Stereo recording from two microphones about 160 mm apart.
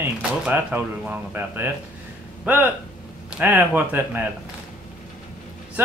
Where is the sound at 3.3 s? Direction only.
10° right (ahead or behind).